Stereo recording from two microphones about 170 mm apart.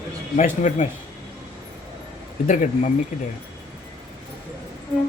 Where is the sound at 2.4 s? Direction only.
45° left (ahead or behind).